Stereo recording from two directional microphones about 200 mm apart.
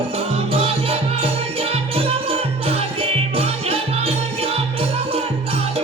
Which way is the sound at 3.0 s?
30° right (ahead or behind).